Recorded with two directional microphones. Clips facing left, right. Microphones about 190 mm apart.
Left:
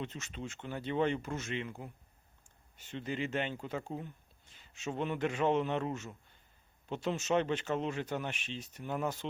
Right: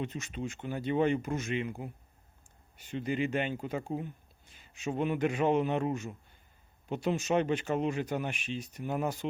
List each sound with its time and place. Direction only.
0.0 s speech: 15° right (ahead or behind)